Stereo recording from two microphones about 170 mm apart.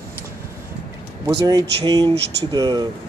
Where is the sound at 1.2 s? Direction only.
20° right (ahead or behind).